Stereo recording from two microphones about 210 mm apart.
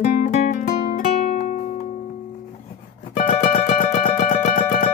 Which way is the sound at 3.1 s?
40° left (ahead or behind).